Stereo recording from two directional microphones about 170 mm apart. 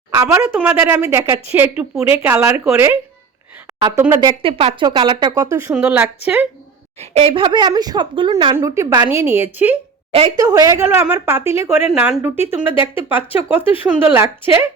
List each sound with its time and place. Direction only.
0.1 s speech: 20° right (ahead or behind)
0.5 s a woman's voice: 5° right (ahead or behind)
7.0 s speech: 40° right (ahead or behind)
8.5 s a woman's voice: 15° right (ahead or behind)
10.1 s a woman's voice: 30° right (ahead or behind)
10.3 s a woman's voice: 20° right (ahead or behind)